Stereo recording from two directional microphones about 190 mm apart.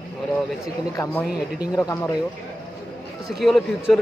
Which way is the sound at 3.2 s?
Centre (ahead or behind).